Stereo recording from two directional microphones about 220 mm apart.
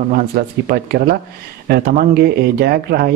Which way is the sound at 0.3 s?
45° right (ahead or behind).